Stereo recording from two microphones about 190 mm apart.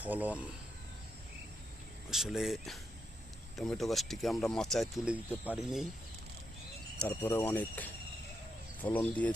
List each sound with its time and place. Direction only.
0.0 s speech: 10° right (ahead or behind)
2.0 s speech: 5° right (ahead or behind)
7.0 s speech: 10° left (ahead or behind)